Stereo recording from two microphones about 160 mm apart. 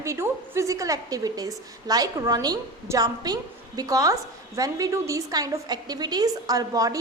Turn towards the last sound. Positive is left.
turn(degrees=-20)  # may be behind; listen again after turning